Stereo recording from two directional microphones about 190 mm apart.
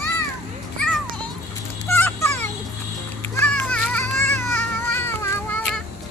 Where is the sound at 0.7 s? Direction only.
5° left (ahead or behind).